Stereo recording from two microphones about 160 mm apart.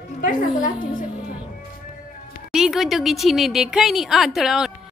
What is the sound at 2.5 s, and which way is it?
A woman's voice, centre (ahead or behind).